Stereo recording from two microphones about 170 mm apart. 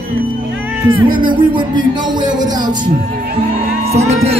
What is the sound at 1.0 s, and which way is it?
Speech, 55° right (ahead or behind).